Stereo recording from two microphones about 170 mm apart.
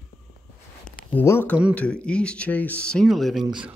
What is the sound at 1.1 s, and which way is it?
Speech, 15° left (ahead or behind).